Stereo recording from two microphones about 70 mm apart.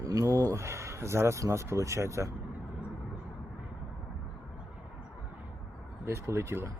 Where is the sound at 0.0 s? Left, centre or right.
Right.